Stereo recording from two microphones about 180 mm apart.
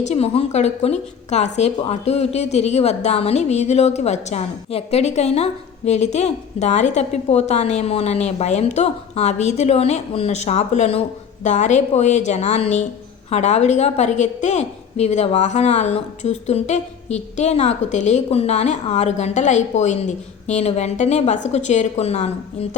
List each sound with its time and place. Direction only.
0.0 s speech: 35° left (ahead or behind)